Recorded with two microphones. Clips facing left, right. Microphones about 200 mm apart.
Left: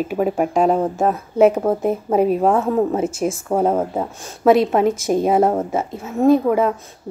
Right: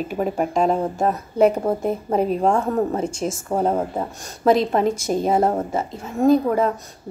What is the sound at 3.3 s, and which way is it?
Speech, 30° left (ahead or behind).